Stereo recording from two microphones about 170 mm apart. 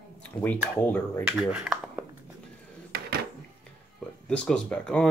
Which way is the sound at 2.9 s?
65° right (ahead or behind).